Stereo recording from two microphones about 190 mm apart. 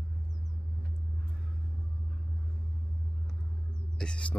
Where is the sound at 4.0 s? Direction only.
5° left (ahead or behind).